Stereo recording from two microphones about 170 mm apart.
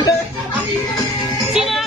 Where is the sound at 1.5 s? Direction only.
Centre (ahead or behind).